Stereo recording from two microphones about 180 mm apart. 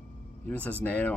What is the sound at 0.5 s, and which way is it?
Speech, 10° left (ahead or behind).